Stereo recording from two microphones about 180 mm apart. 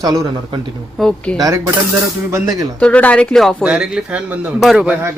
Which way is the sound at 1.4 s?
20° right (ahead or behind).